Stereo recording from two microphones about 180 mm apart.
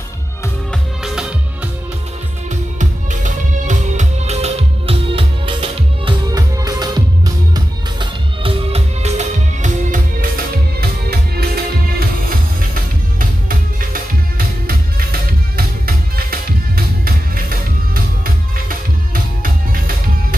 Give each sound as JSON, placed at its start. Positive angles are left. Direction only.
{"t": 0.7, "sound": "music", "side_deg": -5}
{"t": 3.6, "sound": "music", "side_deg": -40}
{"t": 10.8, "sound": "music", "side_deg": -60}
{"t": 13.5, "sound": "music", "side_deg": -50}
{"t": 15.5, "sound": "music", "side_deg": -55}